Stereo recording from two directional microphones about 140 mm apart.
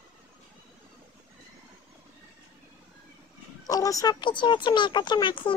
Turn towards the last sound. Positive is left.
turn(degrees=35)  # may be behind; listen again after turning